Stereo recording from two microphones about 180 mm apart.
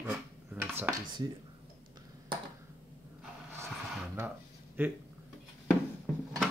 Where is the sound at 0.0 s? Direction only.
10° right (ahead or behind).